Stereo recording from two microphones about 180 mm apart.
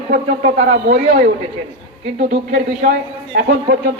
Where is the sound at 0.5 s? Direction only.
80° right.